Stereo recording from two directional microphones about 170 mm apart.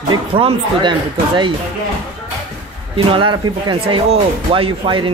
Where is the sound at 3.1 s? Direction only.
30° right (ahead or behind).